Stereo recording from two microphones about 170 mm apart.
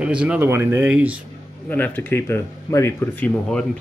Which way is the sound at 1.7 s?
10° left (ahead or behind).